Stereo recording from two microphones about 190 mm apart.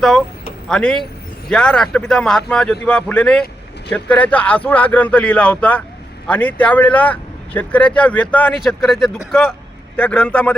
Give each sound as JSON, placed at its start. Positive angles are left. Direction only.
{"t": 0.7, "sound": "speech", "side_deg": 5}